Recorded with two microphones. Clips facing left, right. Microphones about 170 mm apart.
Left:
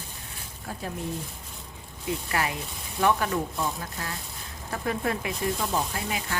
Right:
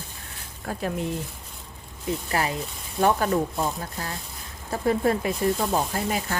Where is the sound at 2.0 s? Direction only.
30° right (ahead or behind).